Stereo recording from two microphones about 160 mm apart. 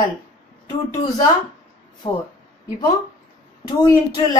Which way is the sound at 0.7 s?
25° left (ahead or behind).